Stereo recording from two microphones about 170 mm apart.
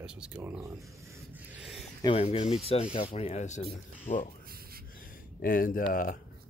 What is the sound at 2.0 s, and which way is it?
Speech, 35° left (ahead or behind).